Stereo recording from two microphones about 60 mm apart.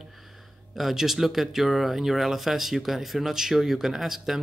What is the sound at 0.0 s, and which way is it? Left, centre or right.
Speech, centre.